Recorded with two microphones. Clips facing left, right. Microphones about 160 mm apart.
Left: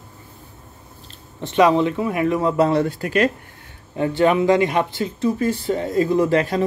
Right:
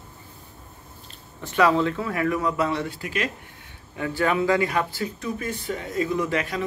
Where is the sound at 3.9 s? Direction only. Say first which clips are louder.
Left 7 dB; 25° left (ahead or behind).